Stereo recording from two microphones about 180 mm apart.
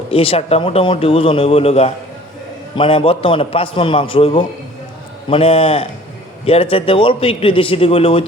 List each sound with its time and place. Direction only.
0.1 s a man's voice: 30° left (ahead or behind)